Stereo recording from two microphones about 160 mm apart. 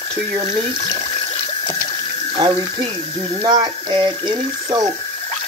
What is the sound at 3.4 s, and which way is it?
Speech, 25° right (ahead or behind).